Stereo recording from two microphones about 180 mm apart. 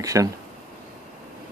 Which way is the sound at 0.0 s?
20° right (ahead or behind).